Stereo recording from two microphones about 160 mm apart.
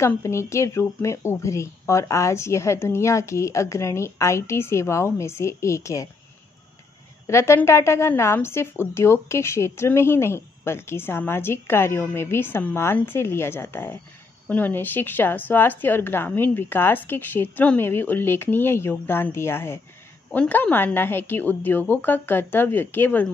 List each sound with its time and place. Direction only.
0.0 s a woman's voice: 15° left (ahead or behind)
7.2 s a woman's voice: 15° left (ahead or behind)